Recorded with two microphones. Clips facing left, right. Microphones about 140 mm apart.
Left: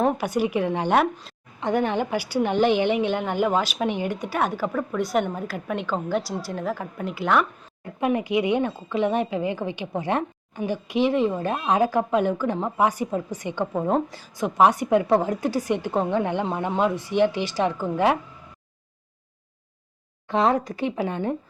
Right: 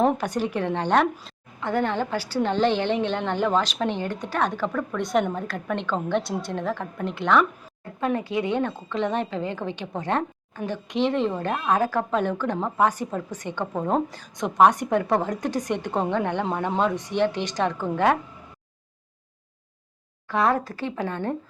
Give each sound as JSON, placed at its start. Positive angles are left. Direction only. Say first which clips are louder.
{"t": 0.2, "sound": "a woman's voice", "louder": "left 3 dB", "side_deg": 10}
{"t": 11.5, "sound": "a woman's voice", "louder": "left 1 dB", "side_deg": 20}
{"t": 20.2, "sound": "a woman's voice", "louder": "left 2 dB", "side_deg": 20}